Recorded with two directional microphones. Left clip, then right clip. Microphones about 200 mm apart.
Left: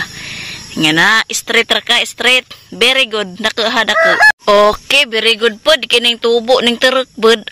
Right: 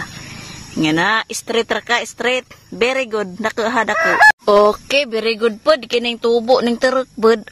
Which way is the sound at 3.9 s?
30° left (ahead or behind).